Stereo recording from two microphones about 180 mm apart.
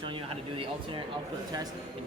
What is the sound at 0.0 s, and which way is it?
Speech, 30° right (ahead or behind).